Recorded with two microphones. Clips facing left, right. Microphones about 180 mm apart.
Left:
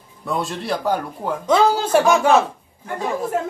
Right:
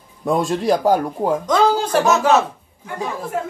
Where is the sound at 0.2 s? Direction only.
40° right (ahead or behind).